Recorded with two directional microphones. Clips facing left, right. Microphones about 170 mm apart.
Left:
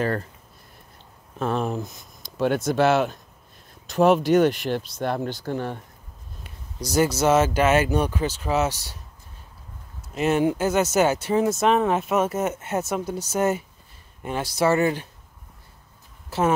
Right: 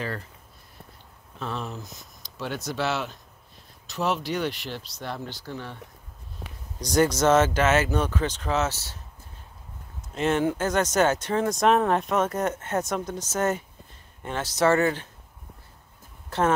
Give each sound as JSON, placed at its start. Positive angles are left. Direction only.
{"t": 1.4, "sound": "speech", "side_deg": 50}
{"t": 6.4, "sound": "a sound", "side_deg": -65}
{"t": 6.8, "sound": "speech", "side_deg": 5}
{"t": 10.0, "sound": "speech", "side_deg": 10}
{"t": 16.3, "sound": "speech", "side_deg": 5}